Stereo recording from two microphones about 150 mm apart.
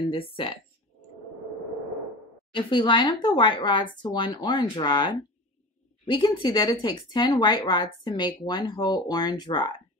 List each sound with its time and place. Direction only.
0.1 s speech: 35° left (ahead or behind)
2.5 s speech: 30° left (ahead or behind)